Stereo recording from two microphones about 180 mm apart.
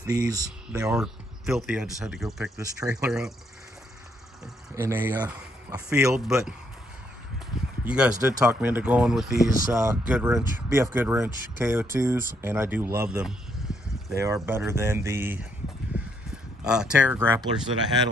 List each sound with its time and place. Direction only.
0.0 s speech: 20° right (ahead or behind)
0.8 s a man's voice: 5° right (ahead or behind)
2.5 s speech: 20° right (ahead or behind)
4.7 s speech: 15° right (ahead or behind)
13.1 s a sound: 5° right (ahead or behind)
14.1 s speech: 15° right (ahead or behind)
16.6 s speech: 5° right (ahead or behind)